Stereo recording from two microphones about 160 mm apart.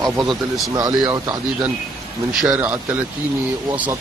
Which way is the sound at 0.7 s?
20° right (ahead or behind).